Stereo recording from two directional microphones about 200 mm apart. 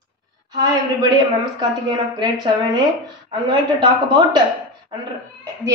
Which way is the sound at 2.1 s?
20° right (ahead or behind).